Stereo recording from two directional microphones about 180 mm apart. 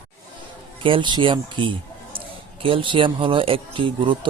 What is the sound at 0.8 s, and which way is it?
Speech, 25° right (ahead or behind).